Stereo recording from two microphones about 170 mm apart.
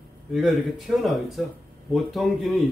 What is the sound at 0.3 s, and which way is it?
Speech, centre (ahead or behind).